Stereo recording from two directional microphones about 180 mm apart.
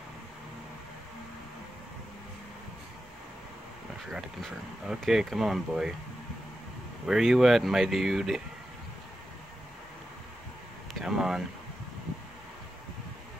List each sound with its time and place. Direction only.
4.1 s speech: centre (ahead or behind)
7.1 s speech: centre (ahead or behind)
10.9 s a sound: centre (ahead or behind)